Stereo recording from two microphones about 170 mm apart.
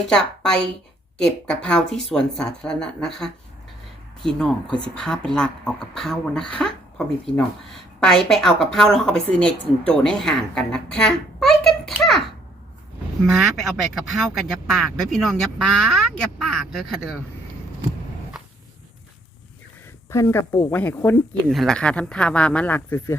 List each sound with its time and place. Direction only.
0.1 s speech: 5° left (ahead or behind)
13.3 s speech: centre (ahead or behind)
20.1 s speech: 15° left (ahead or behind)